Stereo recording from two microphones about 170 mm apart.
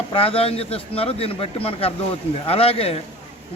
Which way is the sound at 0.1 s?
35° left (ahead or behind).